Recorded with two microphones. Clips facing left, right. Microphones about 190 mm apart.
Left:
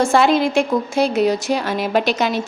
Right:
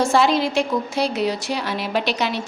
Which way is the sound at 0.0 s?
55° left (ahead or behind).